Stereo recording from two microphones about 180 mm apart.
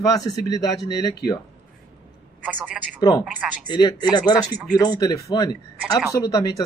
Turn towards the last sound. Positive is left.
turn(degrees=20)  # may be behind; listen again after turning